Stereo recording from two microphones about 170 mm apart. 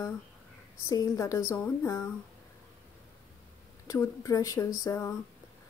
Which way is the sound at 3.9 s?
20° left (ahead or behind).